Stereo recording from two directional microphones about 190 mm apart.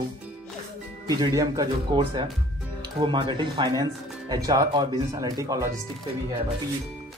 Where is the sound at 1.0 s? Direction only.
20° right (ahead or behind).